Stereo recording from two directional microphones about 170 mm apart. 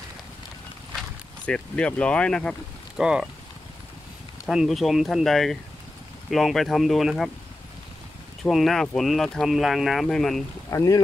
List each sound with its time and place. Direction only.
1.4 s speech: 5° left (ahead or behind)
4.5 s speech: centre (ahead or behind)
8.5 s speech: centre (ahead or behind)
10.7 s speech: 15° left (ahead or behind)